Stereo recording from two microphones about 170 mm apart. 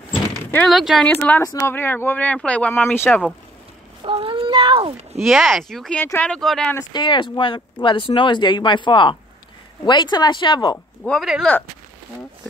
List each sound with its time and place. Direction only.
0.7 s speech: centre (ahead or behind)
4.0 s speech: 30° right (ahead or behind)
5.1 s speech: centre (ahead or behind)
6.9 s speech: 25° left (ahead or behind)
11.1 s speech: centre (ahead or behind)